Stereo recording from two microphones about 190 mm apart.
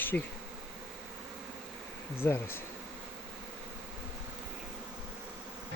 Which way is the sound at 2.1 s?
10° left (ahead or behind).